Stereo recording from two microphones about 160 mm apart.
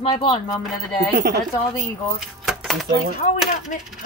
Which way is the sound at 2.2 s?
Centre (ahead or behind).